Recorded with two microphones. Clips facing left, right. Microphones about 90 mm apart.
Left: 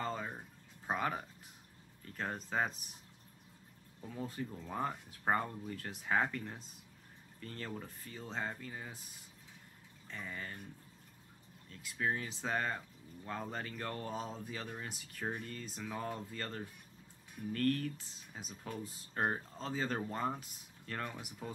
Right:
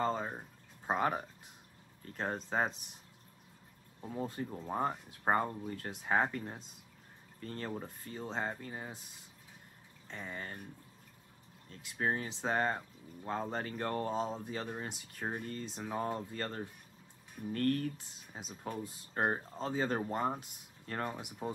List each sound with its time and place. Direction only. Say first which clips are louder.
0.0 s speech: right 5 dB; 30° right (ahead or behind)
4.0 s speech: right 3 dB; 35° right (ahead or behind)
8.5 s speech: right 3 dB; 35° right (ahead or behind)
10.0 s speech: right 2 dB; 30° right (ahead or behind)
11.7 s speech: right 2 dB; 35° right (ahead or behind)
15.3 s speech: right 4 dB; 35° right (ahead or behind)
17.9 s speech: right 2 dB; 20° right (ahead or behind)
18.6 s speech: right 4 dB; 30° right (ahead or behind)